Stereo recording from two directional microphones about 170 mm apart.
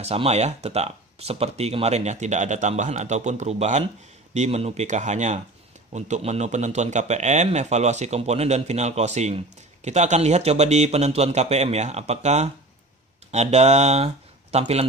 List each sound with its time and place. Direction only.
0.0 s speech: 40° right (ahead or behind)